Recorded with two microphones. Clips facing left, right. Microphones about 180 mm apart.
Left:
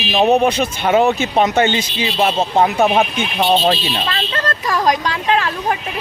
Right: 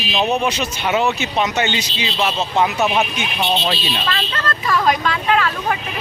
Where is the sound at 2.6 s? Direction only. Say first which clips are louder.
Left 3 dB; 50° left (ahead or behind).